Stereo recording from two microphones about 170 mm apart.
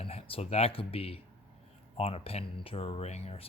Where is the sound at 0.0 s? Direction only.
35° left (ahead or behind).